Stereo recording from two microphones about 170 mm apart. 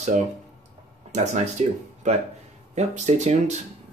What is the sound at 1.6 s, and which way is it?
Speech, 45° right (ahead or behind).